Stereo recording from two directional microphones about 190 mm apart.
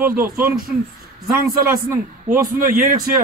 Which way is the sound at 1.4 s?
50° right (ahead or behind).